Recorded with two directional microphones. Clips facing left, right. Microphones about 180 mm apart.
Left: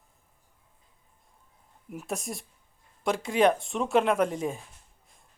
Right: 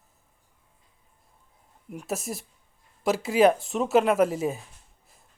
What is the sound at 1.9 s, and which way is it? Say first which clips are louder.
Speech: right 2 dB; 5° right (ahead or behind).